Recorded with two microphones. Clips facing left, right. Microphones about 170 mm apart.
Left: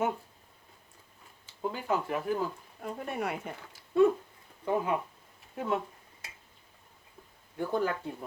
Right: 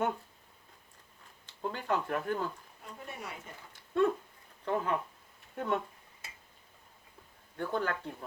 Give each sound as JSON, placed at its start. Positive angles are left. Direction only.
{"t": 1.5, "sound": "speech", "side_deg": 5}
{"t": 2.8, "sound": "speech", "side_deg": 60}
{"t": 3.7, "sound": "speech", "side_deg": 5}
{"t": 7.5, "sound": "speech", "side_deg": 10}